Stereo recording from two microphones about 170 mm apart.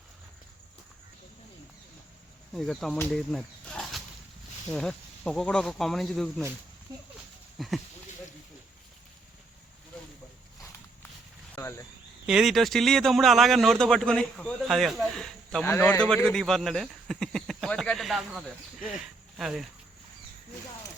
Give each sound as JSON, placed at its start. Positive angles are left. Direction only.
{"t": 2.5, "sound": "a man's voice", "side_deg": 0}
{"t": 6.9, "sound": "speech", "side_deg": -15}
{"t": 7.6, "sound": "a man's voice", "side_deg": 0}
{"t": 11.5, "sound": "a sound", "side_deg": 15}
{"t": 12.2, "sound": "a man's voice", "side_deg": -5}
{"t": 15.6, "sound": "speech", "side_deg": 15}